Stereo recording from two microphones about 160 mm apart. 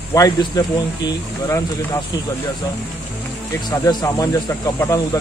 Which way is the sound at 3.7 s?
20° left (ahead or behind).